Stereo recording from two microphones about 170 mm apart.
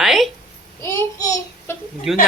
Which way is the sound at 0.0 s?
Centre (ahead or behind).